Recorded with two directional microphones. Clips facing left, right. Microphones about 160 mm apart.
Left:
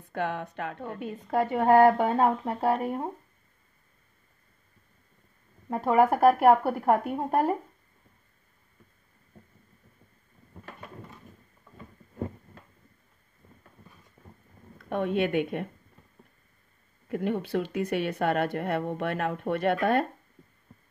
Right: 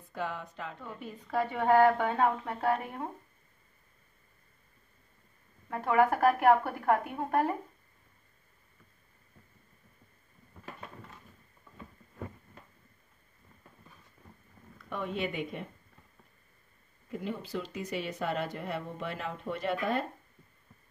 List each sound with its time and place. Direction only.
0.1 s a woman's voice: 65° left (ahead or behind); by 3.1 s 40° left (ahead or behind)
5.7 s a woman's voice: 35° left (ahead or behind)
14.9 s speech: 60° left (ahead or behind)
17.1 s speech: 60° left (ahead or behind)